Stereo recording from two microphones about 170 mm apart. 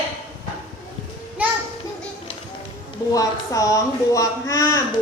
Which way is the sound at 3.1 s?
20° left (ahead or behind).